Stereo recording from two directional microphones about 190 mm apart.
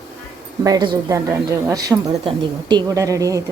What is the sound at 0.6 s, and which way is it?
A woman's voice, 20° right (ahead or behind).